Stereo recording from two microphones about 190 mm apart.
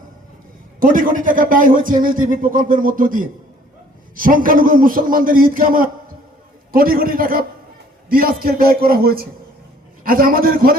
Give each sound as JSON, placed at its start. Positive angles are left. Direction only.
{"t": 0.8, "sound": "speech", "side_deg": -45}